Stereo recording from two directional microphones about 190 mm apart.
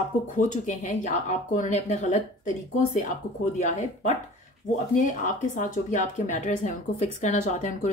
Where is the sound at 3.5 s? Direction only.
40° left (ahead or behind).